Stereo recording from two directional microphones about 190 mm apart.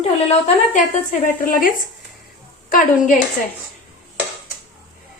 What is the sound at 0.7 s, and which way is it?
Speech, 45° left (ahead or behind).